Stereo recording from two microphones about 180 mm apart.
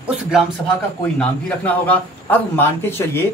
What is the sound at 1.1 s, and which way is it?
A man's voice, 10° left (ahead or behind).